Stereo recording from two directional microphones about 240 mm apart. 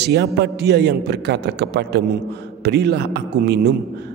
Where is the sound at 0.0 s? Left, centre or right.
Right.